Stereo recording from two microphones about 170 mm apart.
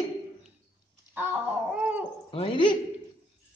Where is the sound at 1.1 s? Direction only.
10° right (ahead or behind).